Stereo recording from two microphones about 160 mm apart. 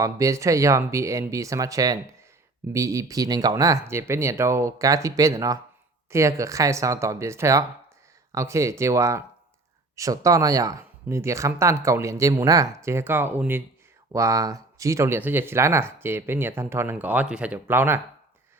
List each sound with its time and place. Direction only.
0.0 s speech: 20° right (ahead or behind)